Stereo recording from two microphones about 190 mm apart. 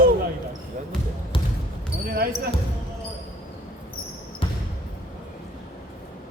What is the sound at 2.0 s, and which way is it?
Basketball bounce, 50° right (ahead or behind).